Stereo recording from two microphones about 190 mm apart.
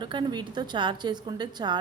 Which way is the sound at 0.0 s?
25° right (ahead or behind).